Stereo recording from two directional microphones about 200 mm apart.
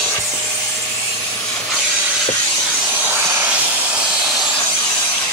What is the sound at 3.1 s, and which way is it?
Vehicle, 10° right (ahead or behind).